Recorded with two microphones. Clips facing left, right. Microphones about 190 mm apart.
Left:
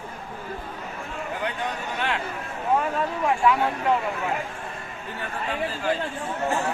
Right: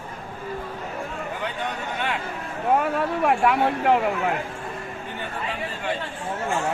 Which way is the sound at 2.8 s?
60° right (ahead or behind).